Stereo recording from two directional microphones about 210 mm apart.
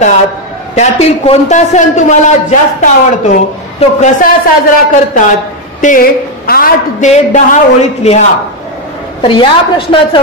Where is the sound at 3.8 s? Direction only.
35° left (ahead or behind).